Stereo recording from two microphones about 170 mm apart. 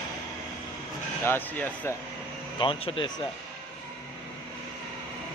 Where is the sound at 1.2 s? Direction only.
10° left (ahead or behind).